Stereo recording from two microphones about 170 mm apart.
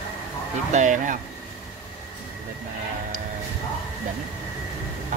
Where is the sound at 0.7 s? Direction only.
45° right (ahead or behind).